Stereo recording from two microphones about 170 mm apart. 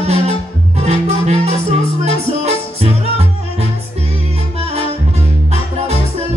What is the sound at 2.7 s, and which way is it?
Music, 35° right (ahead or behind).